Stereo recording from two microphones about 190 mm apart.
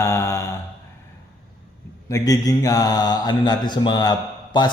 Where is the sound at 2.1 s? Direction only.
20° left (ahead or behind).